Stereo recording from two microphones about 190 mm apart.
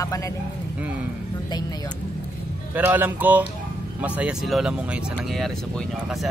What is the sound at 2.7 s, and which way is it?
Speech, 10° right (ahead or behind).